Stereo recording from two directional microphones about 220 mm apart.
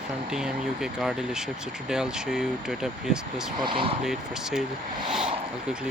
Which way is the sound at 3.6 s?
25° right (ahead or behind).